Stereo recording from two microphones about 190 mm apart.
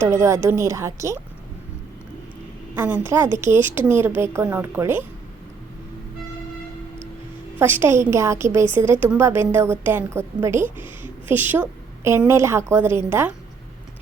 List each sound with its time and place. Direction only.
0.0 s a woman's voice: 15° right (ahead or behind)
2.7 s a woman's voice: 10° right (ahead or behind)
7.6 s a woman's voice: 10° right (ahead or behind)